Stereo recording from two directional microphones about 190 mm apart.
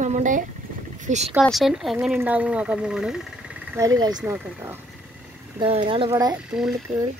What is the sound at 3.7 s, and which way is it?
Speech, 15° right (ahead or behind).